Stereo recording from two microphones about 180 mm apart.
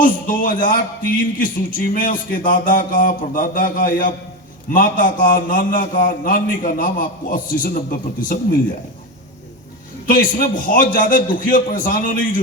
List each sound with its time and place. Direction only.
0.0 s a man's voice: 50° left (ahead or behind)
10.1 s a man's voice: 50° left (ahead or behind)